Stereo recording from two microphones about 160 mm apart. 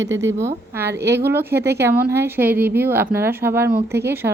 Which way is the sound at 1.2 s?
15° right (ahead or behind).